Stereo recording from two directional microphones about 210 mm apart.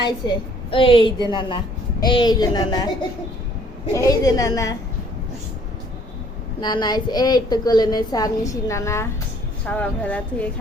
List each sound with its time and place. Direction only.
0.7 s a woman's voice: 25° left (ahead or behind)
3.9 s a woman's voice: 15° left (ahead or behind)
6.6 s a woman's voice: 20° left (ahead or behind)